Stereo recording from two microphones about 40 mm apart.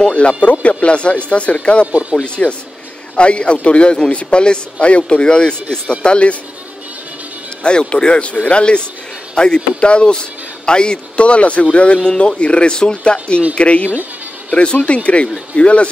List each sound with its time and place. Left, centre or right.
0.1 s speech: left
1.9 s speech: right
2.2 s a man's voice: left
7.6 s a man's voice: left